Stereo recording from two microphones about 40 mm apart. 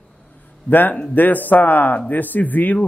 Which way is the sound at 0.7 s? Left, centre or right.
Left.